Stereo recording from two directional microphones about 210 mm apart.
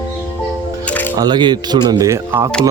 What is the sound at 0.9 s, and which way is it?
Music, 10° left (ahead or behind).